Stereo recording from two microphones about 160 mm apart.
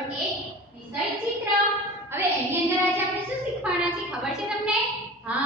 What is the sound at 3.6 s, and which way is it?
A woman's voice, 5° right (ahead or behind).